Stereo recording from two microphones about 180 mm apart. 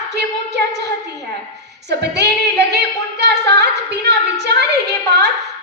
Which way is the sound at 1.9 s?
70° right (ahead or behind).